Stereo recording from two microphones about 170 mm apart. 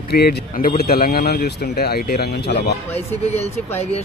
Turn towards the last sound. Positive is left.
turn(degrees=35)  # may be behind; listen again after turning